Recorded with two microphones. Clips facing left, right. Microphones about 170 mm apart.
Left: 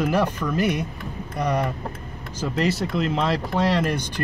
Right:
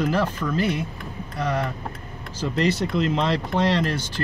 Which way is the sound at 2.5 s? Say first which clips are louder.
Right 1 dB; centre (ahead or behind).